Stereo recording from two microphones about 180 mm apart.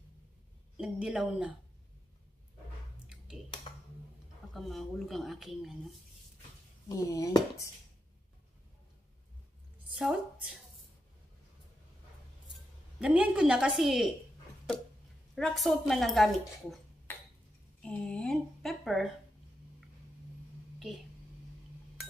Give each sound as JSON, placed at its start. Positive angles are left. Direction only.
{"t": 0.7, "sound": "speech", "side_deg": -5}
{"t": 3.7, "sound": "a sound", "side_deg": 30}
{"t": 4.6, "sound": "speech", "side_deg": 0}
{"t": 6.9, "sound": "speech", "side_deg": 20}
{"t": 9.9, "sound": "speech", "side_deg": 0}
{"t": 13.0, "sound": "speech", "side_deg": -5}
{"t": 15.3, "sound": "speech", "side_deg": 0}
{"t": 17.8, "sound": "speech", "side_deg": 5}